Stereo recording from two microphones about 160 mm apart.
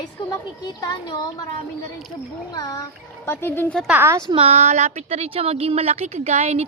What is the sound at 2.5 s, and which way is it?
A woman's voice, 20° left (ahead or behind).